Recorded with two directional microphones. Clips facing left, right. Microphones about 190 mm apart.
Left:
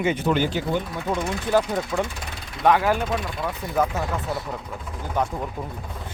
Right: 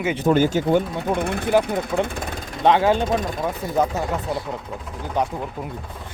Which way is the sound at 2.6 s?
25° right (ahead or behind).